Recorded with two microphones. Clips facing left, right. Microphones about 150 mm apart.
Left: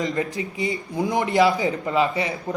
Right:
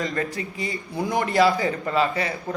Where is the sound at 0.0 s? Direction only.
20° left (ahead or behind).